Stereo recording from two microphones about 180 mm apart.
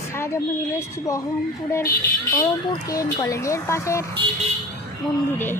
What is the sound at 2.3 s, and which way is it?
Speech, 20° left (ahead or behind).